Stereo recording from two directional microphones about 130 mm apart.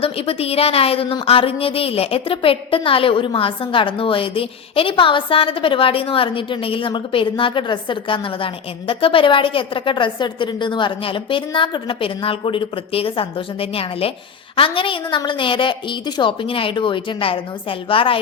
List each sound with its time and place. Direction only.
0.0 s a woman's voice: 45° left (ahead or behind)